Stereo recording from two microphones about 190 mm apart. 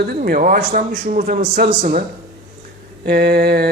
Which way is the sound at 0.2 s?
45° right (ahead or behind).